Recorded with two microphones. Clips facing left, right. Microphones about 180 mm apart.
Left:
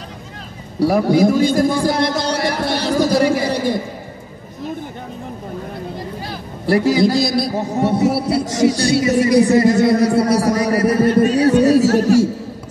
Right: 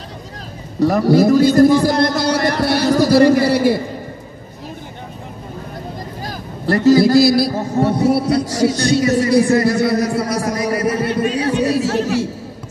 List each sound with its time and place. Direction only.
0.7 s speech: 10° left (ahead or behind)
1.2 s speech: 5° right (ahead or behind)
1.6 s speech: 10° left (ahead or behind)
2.6 s speech: 10° right (ahead or behind)
3.2 s speech: 10° left (ahead or behind)
3.4 s speech: 10° right (ahead or behind)
6.6 s a man's voice: 10° left (ahead or behind)
7.0 s a man's voice: 5° right (ahead or behind)
8.5 s a man's voice: 20° left (ahead or behind); by 12.3 s 45° left (ahead or behind)